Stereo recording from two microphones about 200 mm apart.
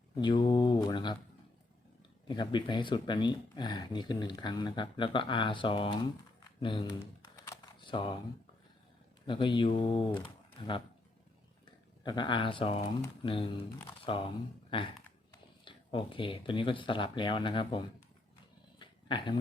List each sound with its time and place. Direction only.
0.2 s speech: 20° left (ahead or behind)
2.2 s speech: 20° left (ahead or behind)
7.3 s a sound: 15° left (ahead or behind)
9.2 s speech: 25° left (ahead or behind)
18.8 s dog: 25° left (ahead or behind)